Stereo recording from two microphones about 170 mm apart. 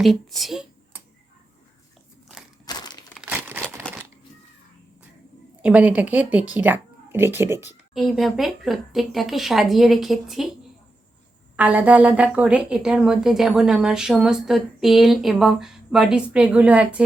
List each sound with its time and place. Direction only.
0.0 s a woman's voice: centre (ahead or behind)
2.6 s crumpling: 25° left (ahead or behind)
3.2 s crumpling: 10° right (ahead or behind)
3.9 s a sound: 5° left (ahead or behind)
5.6 s a woman's voice: 5° right (ahead or behind)
7.9 s a woman's voice: centre (ahead or behind)